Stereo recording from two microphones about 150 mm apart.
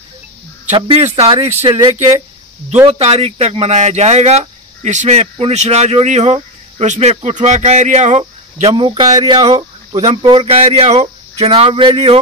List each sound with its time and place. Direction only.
0.7 s speech: 40° right (ahead or behind)